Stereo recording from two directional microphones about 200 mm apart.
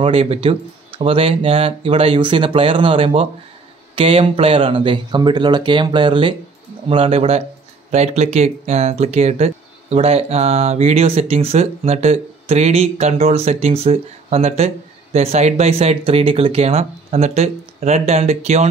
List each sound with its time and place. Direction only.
0.0 s speech: 30° right (ahead or behind)